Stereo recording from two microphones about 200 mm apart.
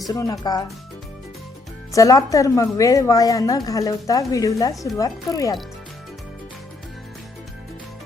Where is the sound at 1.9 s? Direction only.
15° left (ahead or behind).